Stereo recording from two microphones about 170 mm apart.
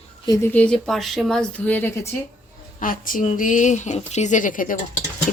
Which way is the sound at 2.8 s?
55° left (ahead or behind).